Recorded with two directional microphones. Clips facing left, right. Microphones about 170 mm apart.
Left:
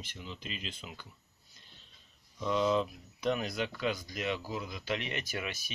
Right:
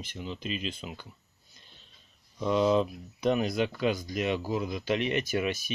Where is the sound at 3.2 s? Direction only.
20° right (ahead or behind).